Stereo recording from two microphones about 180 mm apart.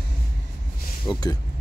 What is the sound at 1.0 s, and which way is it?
Speech, 20° left (ahead or behind).